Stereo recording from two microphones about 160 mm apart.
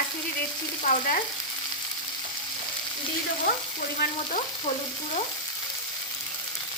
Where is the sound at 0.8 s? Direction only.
60° left (ahead or behind).